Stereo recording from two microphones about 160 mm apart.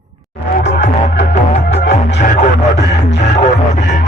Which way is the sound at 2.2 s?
55° left (ahead or behind).